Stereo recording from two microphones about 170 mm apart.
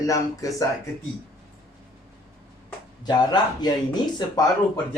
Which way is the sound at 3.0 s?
25° left (ahead or behind).